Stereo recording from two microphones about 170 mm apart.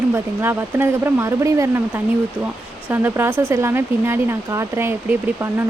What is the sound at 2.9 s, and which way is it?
Speech, 10° right (ahead or behind).